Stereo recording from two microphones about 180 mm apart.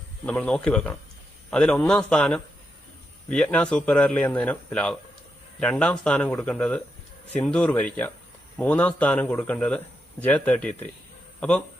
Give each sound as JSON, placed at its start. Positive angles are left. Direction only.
{"t": 0.3, "sound": "a man's voice", "side_deg": 5}